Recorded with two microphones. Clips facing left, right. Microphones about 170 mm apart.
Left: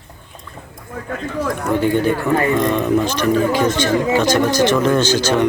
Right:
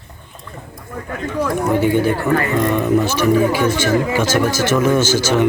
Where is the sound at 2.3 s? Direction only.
20° left (ahead or behind).